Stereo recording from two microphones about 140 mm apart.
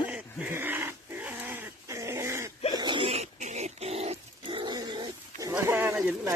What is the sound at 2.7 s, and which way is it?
Pig, 35° right (ahead or behind).